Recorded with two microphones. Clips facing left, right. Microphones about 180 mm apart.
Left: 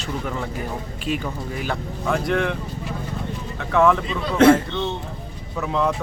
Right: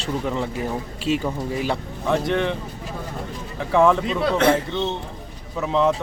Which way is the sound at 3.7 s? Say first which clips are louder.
Right 1 dB; 30° right (ahead or behind).